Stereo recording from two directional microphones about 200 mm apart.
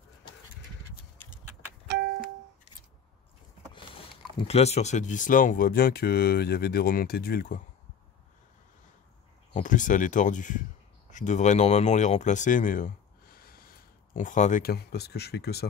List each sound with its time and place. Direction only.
4.5 s speech: 30° left (ahead or behind)
9.5 s speech: 40° left (ahead or behind)